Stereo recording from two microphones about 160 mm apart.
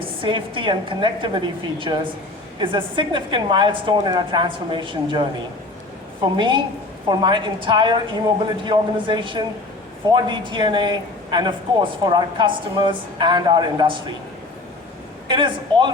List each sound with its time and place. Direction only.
0.2 s a woman's voice: 30° right (ahead or behind)
6.3 s a woman's voice: 30° right (ahead or behind)
15.3 s a woman's voice: 30° right (ahead or behind)